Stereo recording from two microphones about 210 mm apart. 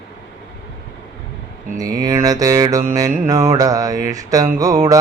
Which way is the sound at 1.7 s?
15° right (ahead or behind).